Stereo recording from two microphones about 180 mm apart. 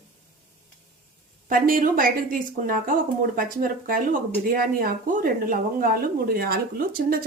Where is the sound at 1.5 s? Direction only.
50° right (ahead or behind).